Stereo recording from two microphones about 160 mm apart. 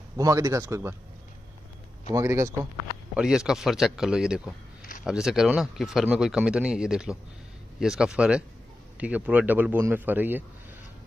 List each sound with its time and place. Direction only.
0.2 s speech: 20° right (ahead or behind)
2.0 s speech: 20° right (ahead or behind)
3.2 s a man's voice: 5° right (ahead or behind)